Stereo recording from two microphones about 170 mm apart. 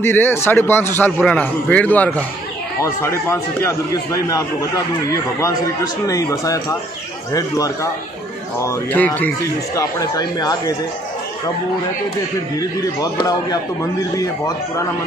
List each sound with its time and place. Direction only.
0.0 s a man's voice: 15° left (ahead or behind)
9.8 s a man's voice: 20° left (ahead or behind)
12.5 s a man's voice: 20° left (ahead or behind)